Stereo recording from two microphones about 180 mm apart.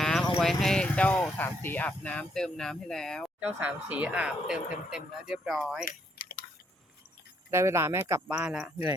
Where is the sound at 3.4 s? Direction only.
5° right (ahead or behind).